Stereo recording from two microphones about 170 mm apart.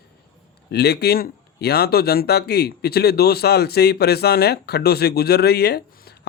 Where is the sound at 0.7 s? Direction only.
70° left (ahead or behind).